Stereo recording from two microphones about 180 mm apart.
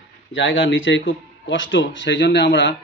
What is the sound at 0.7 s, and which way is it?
Speech, 90° left.